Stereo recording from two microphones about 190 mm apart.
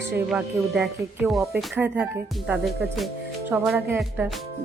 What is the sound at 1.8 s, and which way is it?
A woman's voice, 10° right (ahead or behind).